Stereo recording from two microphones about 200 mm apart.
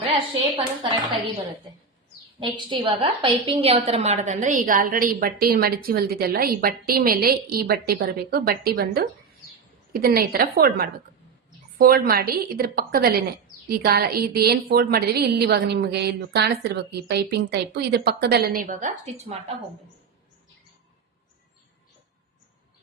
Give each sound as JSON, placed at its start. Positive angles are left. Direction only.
{"t": 0.5, "sound": "a woman's voice", "side_deg": -25}
{"t": 2.4, "sound": "a woman's voice", "side_deg": -25}